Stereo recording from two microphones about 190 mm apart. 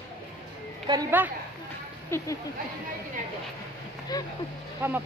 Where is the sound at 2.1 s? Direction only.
10° left (ahead or behind).